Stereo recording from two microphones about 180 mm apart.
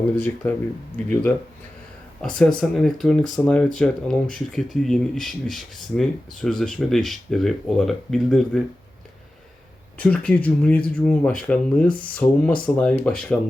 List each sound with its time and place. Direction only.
0.4 s speech: 15° left (ahead or behind)
10.0 s speech: 5° left (ahead or behind)